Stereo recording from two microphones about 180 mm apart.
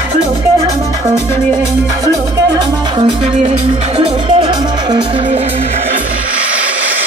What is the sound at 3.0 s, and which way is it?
Music, 30° right (ahead or behind).